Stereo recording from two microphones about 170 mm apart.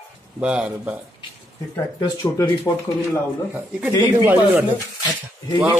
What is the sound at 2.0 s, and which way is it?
Speech, 20° left (ahead or behind).